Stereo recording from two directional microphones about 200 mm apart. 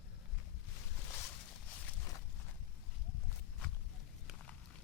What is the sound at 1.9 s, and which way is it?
Walk, 15° left (ahead or behind).